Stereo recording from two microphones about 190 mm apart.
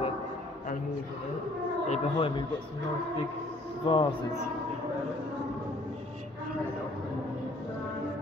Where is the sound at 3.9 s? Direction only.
25° left (ahead or behind).